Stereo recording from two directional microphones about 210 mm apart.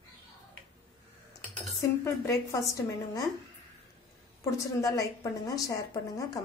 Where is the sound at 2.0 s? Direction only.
15° left (ahead or behind).